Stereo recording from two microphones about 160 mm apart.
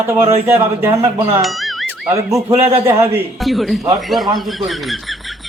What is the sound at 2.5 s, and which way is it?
Speech, 40° right (ahead or behind).